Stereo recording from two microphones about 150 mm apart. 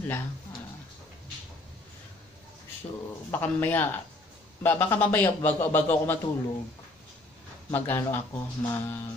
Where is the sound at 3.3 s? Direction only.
10° left (ahead or behind).